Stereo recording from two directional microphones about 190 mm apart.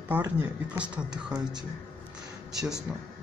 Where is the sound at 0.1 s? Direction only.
10° right (ahead or behind).